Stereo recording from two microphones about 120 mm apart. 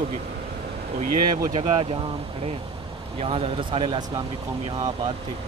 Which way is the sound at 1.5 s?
50° right (ahead or behind).